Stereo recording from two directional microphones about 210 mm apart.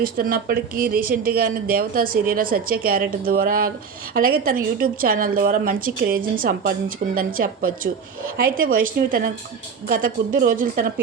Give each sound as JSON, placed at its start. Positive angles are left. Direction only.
{"t": 0.0, "sound": "a woman's voice", "side_deg": -45}